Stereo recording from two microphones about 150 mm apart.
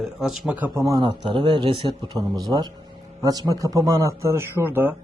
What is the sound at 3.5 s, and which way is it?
A man's voice, 20° right (ahead or behind).